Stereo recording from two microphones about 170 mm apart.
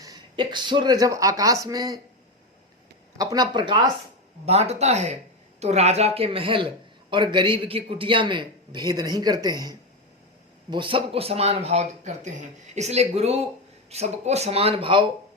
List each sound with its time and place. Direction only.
0.0 s speech: 25° right (ahead or behind)
3.2 s a man's voice: 20° right (ahead or behind)
4.4 s a man's voice: 40° right (ahead or behind)